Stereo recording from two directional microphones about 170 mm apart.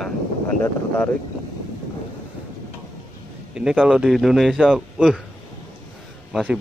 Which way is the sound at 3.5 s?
5° right (ahead or behind).